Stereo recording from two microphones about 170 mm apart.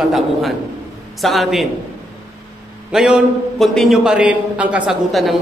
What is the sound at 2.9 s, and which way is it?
A man's voice, 5° right (ahead or behind).